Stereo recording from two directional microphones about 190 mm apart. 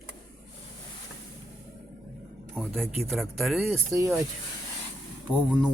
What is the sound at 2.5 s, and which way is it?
Speech, 5° left (ahead or behind).